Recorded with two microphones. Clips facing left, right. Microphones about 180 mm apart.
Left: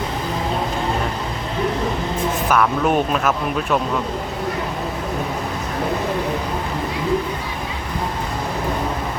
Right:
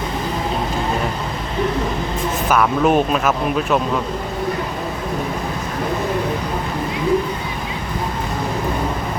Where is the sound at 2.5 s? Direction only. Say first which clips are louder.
Right 3 dB; 5° right (ahead or behind).